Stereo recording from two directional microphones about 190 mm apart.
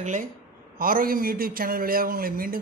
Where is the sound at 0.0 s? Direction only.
40° right (ahead or behind).